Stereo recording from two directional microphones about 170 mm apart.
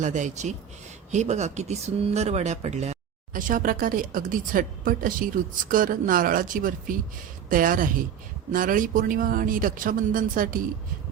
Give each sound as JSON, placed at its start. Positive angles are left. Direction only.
{"t": 0.0, "sound": "a woman's voice", "side_deg": -45}